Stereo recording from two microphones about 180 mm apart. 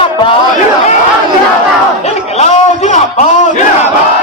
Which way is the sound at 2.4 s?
40° left (ahead or behind).